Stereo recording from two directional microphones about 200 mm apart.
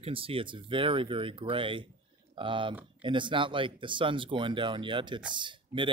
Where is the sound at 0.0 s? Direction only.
25° right (ahead or behind).